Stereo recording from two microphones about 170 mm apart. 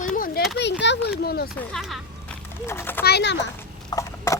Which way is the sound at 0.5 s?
90° left.